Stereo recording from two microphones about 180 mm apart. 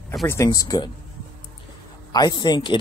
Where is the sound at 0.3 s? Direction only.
20° left (ahead or behind).